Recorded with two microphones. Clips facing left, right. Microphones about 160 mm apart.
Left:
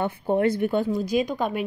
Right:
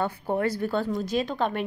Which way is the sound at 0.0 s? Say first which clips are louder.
Left 4 dB; 25° left (ahead or behind).